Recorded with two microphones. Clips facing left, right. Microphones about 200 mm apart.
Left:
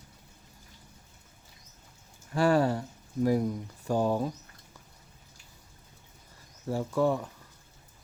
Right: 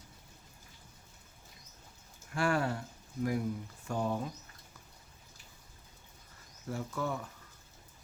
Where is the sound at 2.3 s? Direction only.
35° left (ahead or behind).